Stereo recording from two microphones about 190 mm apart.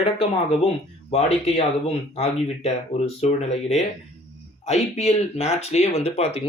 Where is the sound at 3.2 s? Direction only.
35° left (ahead or behind).